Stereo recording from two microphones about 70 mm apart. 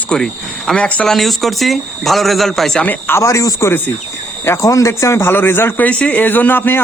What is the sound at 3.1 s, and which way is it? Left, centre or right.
Speech, left.